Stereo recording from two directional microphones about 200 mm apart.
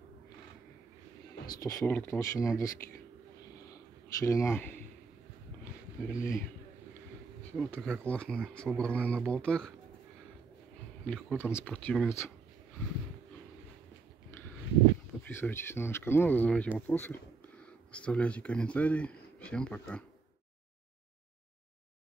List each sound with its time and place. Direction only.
1.6 s speech: 15° left (ahead or behind)
6.0 s speech: 15° left (ahead or behind)
7.5 s speech: 5° left (ahead or behind)
11.1 s speech: 5° left (ahead or behind)
15.2 s speech: 10° left (ahead or behind)